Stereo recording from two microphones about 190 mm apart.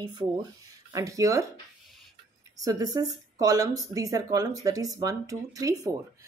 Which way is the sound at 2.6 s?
20° right (ahead or behind).